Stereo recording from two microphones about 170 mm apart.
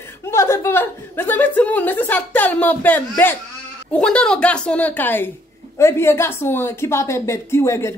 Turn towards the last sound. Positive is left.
turn(degrees=15)  # may be behind; listen again after turning